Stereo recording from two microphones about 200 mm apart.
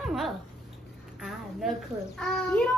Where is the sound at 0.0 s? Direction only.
Centre (ahead or behind).